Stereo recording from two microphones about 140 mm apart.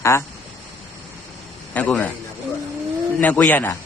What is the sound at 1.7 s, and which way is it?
Speech, 10° left (ahead or behind).